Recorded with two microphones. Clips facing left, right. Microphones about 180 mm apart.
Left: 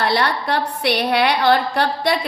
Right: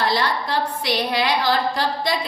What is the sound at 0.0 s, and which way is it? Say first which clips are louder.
A woman's voice: left 2 dB; 60° left (ahead or behind).